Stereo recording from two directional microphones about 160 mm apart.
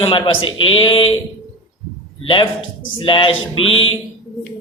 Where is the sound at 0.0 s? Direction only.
35° left (ahead or behind).